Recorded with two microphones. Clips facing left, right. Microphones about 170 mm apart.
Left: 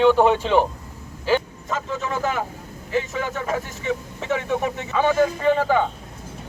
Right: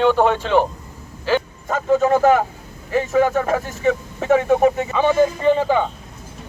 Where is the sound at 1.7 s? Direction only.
50° right (ahead or behind).